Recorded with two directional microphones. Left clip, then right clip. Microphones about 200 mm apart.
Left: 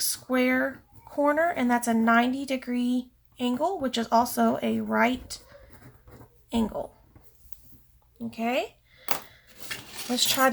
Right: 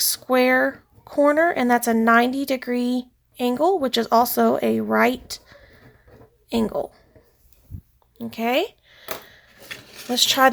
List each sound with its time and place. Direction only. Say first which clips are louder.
0.0 s speech: right 7 dB; 45° right (ahead or behind)
8.2 s speech: right 6 dB; 40° right (ahead or behind)
10.2 s speech: right 7 dB; 45° right (ahead or behind)